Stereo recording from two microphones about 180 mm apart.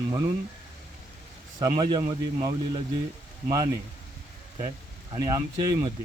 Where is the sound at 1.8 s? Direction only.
25° right (ahead or behind).